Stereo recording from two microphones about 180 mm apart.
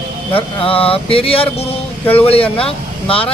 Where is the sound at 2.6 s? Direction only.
30° left (ahead or behind).